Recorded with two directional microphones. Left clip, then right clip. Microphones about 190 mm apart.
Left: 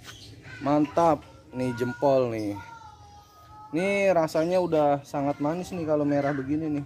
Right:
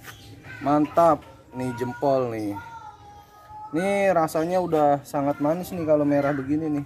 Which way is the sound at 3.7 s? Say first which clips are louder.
Right 2 dB; 25° left (ahead or behind).